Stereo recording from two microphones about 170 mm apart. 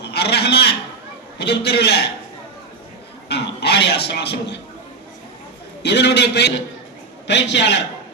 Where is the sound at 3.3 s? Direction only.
75° left (ahead or behind).